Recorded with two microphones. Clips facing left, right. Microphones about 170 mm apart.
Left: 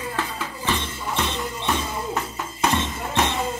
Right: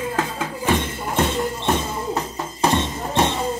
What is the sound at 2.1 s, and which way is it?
Music, 35° right (ahead or behind).